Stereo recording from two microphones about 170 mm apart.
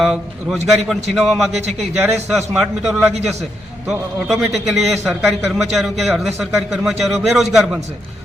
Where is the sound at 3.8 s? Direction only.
5° right (ahead or behind).